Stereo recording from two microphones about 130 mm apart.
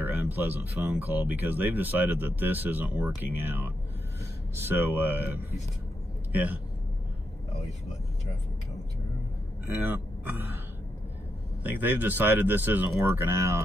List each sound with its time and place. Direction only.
0.0 s speech: 15° right (ahead or behind)
9.8 s speech: 15° right (ahead or behind)
12.0 s speech: 15° right (ahead or behind)